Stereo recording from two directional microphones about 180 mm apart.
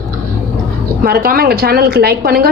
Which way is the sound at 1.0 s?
55° right (ahead or behind).